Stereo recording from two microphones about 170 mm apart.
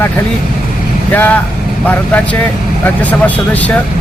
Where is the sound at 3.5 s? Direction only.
10° left (ahead or behind).